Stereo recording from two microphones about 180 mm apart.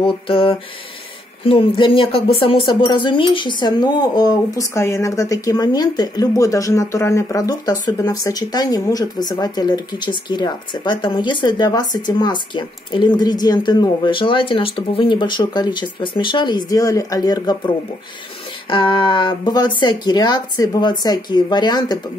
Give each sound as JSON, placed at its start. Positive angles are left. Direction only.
{"t": 0.0, "sound": "speech", "side_deg": 30}
{"t": 18.7, "sound": "speech", "side_deg": 25}